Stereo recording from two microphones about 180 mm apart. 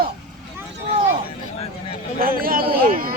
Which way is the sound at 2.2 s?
55° right (ahead or behind).